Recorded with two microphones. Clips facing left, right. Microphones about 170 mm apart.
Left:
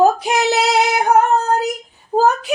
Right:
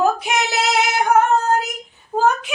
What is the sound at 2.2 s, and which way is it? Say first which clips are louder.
Child singing: left 3 dB; 35° left (ahead or behind).